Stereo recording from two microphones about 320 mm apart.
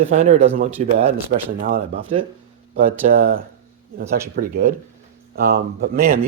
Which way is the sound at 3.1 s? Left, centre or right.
Right.